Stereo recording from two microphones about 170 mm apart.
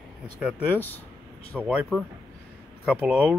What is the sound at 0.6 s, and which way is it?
Speech, 10° left (ahead or behind).